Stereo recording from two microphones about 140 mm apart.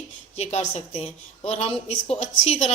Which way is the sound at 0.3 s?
50° left (ahead or behind).